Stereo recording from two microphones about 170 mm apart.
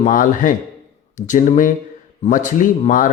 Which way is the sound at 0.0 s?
50° left (ahead or behind).